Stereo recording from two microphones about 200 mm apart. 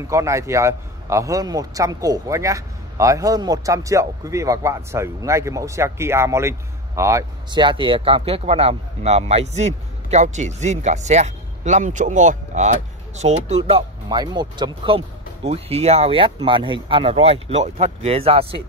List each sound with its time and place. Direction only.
0.0 s a man's voice: 15° right (ahead or behind)